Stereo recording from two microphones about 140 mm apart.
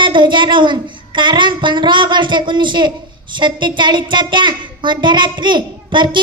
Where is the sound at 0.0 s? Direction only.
35° right (ahead or behind).